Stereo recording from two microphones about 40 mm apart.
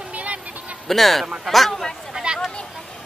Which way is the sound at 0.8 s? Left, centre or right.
Centre.